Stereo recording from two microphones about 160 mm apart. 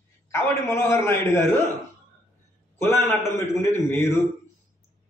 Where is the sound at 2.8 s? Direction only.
15° left (ahead or behind).